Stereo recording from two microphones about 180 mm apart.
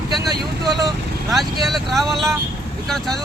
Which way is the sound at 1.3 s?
Centre (ahead or behind).